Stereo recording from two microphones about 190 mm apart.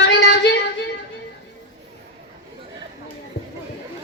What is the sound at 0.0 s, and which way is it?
Female singing, 65° left (ahead or behind).